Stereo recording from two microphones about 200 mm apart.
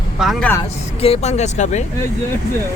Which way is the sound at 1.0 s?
30° left (ahead or behind).